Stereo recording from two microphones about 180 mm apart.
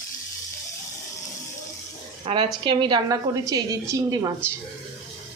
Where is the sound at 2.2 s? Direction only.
30° right (ahead or behind).